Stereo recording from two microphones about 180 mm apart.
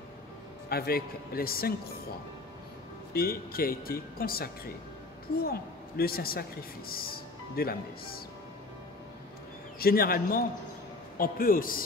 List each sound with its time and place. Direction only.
0.7 s a woman's voice: 60° left (ahead or behind)
3.1 s a woman's voice: 55° left (ahead or behind)
9.8 s a woman's voice: 55° left (ahead or behind)